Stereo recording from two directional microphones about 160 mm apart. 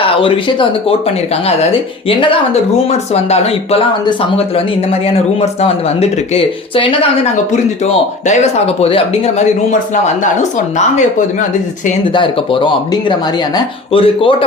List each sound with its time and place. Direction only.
0.0 s speech: 35° left (ahead or behind)
10.8 s speech: 45° left (ahead or behind)
12.0 s speech: 30° left (ahead or behind)